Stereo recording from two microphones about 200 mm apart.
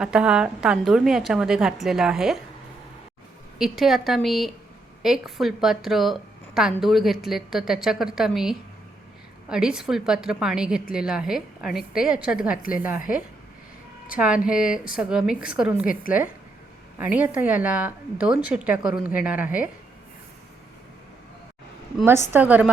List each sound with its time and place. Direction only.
0.0 s a woman's voice: 5° right (ahead or behind)
3.6 s a woman's voice: centre (ahead or behind)
14.2 s a woman's voice: 5° right (ahead or behind)
17.0 s a woman's voice: 10° right (ahead or behind)
22.3 s a woman's voice: 10° right (ahead or behind)